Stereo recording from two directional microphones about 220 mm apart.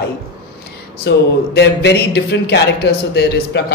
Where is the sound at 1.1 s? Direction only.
50° left (ahead or behind).